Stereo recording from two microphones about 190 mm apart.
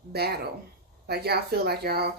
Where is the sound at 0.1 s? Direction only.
55° right (ahead or behind).